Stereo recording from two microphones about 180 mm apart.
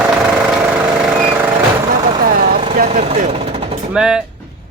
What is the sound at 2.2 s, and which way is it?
Vehicle, 55° right (ahead or behind).